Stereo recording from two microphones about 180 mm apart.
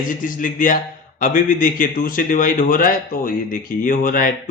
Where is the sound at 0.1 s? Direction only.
50° left (ahead or behind).